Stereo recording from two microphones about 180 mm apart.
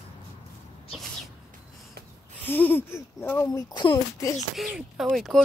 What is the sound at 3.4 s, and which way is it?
Speech, 25° left (ahead or behind).